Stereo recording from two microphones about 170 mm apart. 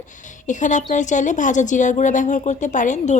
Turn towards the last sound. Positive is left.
turn(degrees=45)  # may be behind; listen again after turning